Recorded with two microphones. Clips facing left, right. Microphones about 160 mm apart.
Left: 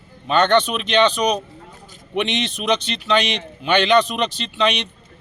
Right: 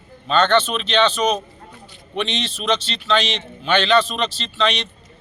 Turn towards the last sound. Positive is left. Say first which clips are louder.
# left 1 dB
turn(degrees=15)  # may be behind; listen again after turning